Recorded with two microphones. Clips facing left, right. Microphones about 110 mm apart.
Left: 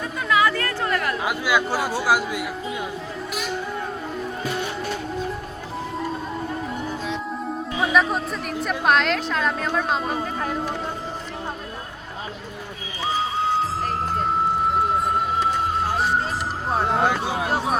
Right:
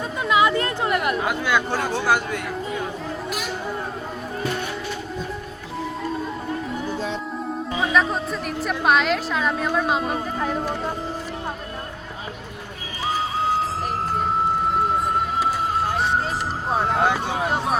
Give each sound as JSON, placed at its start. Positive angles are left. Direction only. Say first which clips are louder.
{"t": 0.2, "sound": "a sound", "louder": "right 2 dB", "side_deg": -20}
{"t": 1.2, "sound": "a man's voice", "louder": "even", "side_deg": 5}
{"t": 7.9, "sound": "a woman's voice", "louder": "left 1 dB", "side_deg": 0}
{"t": 14.7, "sound": "music", "louder": "even", "side_deg": 0}
{"t": 16.6, "sound": "a woman's voice", "louder": "even", "side_deg": 0}